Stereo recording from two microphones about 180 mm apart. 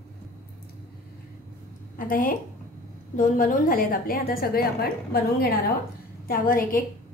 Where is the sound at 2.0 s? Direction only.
50° left (ahead or behind).